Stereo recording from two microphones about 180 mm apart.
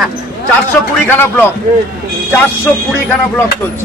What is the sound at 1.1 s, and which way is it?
Speech, 10° left (ahead or behind).